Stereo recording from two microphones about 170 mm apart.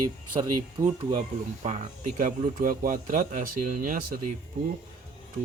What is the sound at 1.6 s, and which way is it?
Speech, 45° right (ahead or behind).